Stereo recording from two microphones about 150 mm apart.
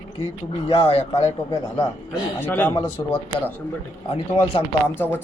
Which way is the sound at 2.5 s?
10° left (ahead or behind).